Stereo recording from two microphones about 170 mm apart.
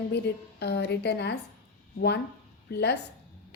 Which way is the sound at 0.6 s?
75° left (ahead or behind).